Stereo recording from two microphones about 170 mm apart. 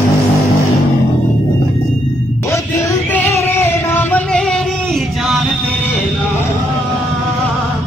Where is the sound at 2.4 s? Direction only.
15° left (ahead or behind).